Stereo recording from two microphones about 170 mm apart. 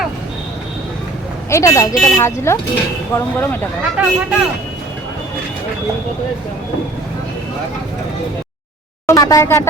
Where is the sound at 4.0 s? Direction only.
5° right (ahead or behind).